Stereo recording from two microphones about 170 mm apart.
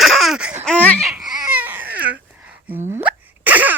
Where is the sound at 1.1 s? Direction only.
5° right (ahead or behind).